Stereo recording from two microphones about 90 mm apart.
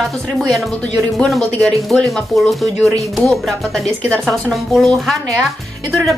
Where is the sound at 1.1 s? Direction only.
Centre (ahead or behind).